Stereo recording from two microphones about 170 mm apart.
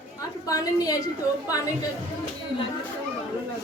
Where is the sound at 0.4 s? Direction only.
20° left (ahead or behind).